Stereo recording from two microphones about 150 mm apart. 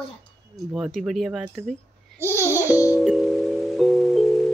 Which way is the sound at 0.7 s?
5° right (ahead or behind).